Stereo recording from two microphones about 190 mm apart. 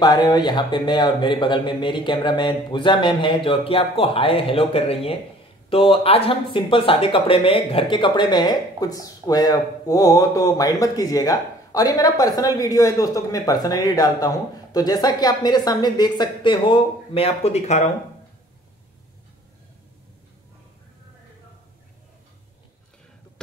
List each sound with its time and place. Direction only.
0.0 s speech: 20° left (ahead or behind)